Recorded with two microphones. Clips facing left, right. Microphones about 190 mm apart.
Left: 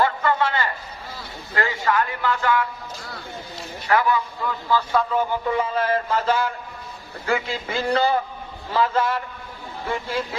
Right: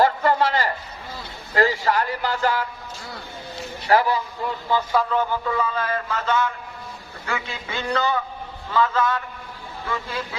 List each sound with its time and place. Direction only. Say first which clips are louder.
0.0 s a sound: right 2 dB; 35° right (ahead or behind)
3.8 s a man's voice: right 1 dB; 35° right (ahead or behind)
5.0 s speech: even; 10° left (ahead or behind)
5.5 s speech: left 3 dB; 25° left (ahead or behind)
7.3 s a sound: left 5 dB; 30° left (ahead or behind)
8.7 s speech: even; 30° left (ahead or behind)